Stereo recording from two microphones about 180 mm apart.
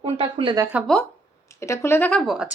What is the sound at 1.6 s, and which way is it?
Speech, 15° left (ahead or behind).